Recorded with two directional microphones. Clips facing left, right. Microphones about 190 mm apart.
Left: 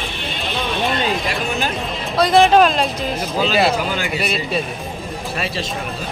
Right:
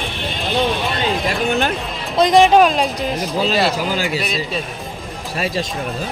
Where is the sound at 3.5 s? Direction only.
35° right (ahead or behind).